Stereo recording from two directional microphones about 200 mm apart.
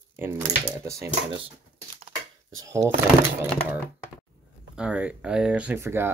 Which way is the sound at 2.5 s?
15° right (ahead or behind).